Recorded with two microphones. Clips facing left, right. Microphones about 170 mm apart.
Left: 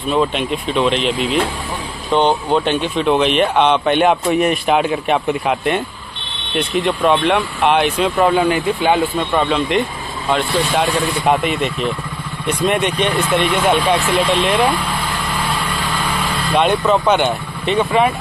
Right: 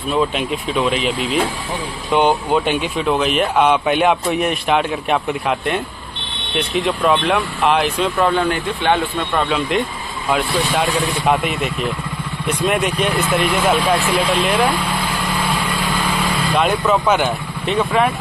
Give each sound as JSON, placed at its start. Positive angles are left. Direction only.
{"t": 0.1, "sound": "speech", "side_deg": 0}
{"t": 16.5, "sound": "speech", "side_deg": 0}